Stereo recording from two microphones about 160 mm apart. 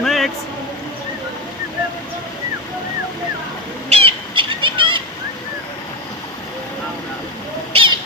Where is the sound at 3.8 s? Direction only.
35° right (ahead or behind).